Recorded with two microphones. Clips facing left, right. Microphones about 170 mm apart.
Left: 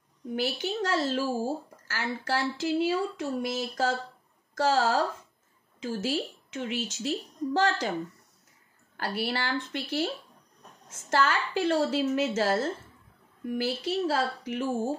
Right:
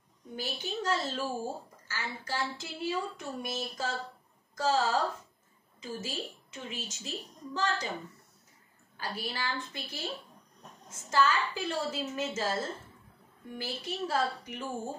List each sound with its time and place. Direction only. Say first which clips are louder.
0.4 s a woman's voice: left 6 dB; 75° left (ahead or behind)
8.9 s a woman's voice: left 7 dB; 75° left (ahead or behind)
13.8 s speech: left 1 dB; 85° left